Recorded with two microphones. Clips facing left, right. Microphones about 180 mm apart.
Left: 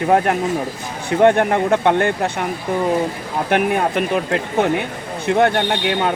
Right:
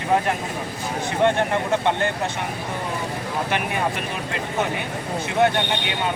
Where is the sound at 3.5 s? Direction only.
55° left (ahead or behind).